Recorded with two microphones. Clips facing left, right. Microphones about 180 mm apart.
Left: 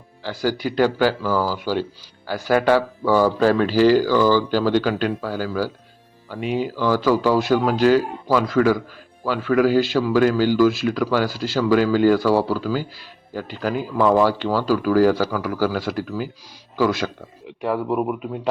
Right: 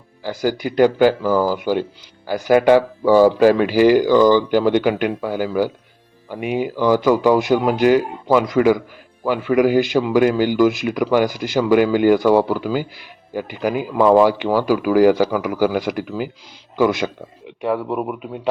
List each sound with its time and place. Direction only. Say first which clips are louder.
0.2 s a man's voice: right 2 dB; 15° right (ahead or behind)
17.4 s a man's voice: right 2 dB; centre (ahead or behind)